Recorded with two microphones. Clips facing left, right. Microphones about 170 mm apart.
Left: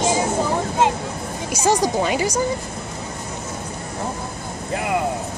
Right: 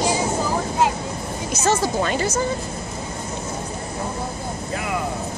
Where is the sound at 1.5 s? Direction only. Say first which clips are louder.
Left 2 dB; 15° left (ahead or behind).